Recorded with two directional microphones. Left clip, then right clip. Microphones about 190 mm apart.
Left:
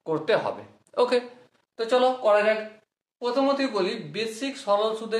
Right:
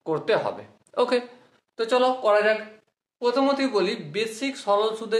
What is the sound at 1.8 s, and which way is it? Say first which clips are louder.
Speech: even; 35° right (ahead or behind).